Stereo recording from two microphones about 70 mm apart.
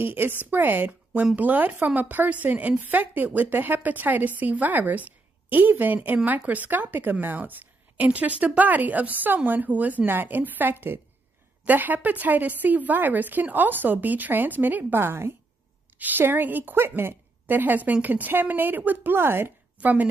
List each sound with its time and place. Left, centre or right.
0.0 s a woman's voice: right
19.8 s a woman's voice: right